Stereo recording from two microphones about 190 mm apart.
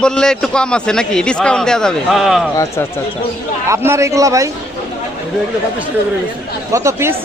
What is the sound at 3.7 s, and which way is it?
Speech, 15° right (ahead or behind).